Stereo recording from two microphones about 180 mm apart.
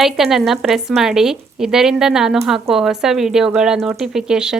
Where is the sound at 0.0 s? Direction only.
Centre (ahead or behind).